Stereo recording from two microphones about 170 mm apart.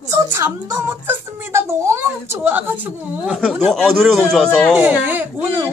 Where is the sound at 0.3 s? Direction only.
15° right (ahead or behind); by 4.7 s 5° left (ahead or behind).